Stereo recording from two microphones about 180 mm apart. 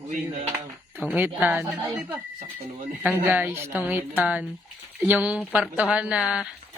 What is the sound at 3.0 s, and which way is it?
Speech, 10° right (ahead or behind).